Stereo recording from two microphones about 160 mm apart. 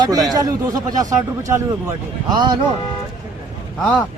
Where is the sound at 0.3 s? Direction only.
25° right (ahead or behind).